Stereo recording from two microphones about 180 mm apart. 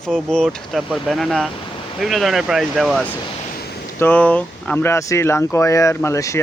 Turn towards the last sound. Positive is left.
turn(degrees=15)  # may be behind; listen again after turning